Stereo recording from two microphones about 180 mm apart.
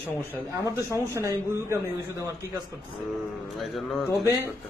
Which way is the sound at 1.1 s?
15° right (ahead or behind).